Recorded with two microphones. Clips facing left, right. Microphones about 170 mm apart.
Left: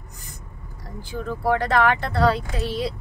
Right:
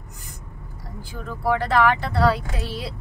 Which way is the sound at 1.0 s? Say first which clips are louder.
Left 2 dB; 5° right (ahead or behind).